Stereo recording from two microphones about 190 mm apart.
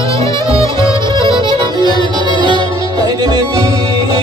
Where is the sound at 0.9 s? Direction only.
25° right (ahead or behind).